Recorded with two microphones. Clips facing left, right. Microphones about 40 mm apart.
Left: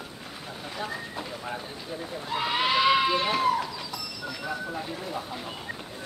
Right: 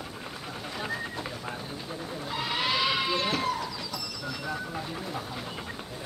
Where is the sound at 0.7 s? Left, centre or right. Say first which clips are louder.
Even; centre.